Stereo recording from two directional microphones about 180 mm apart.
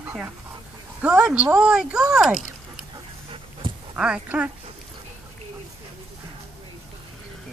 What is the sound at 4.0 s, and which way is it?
Speech, 5° right (ahead or behind).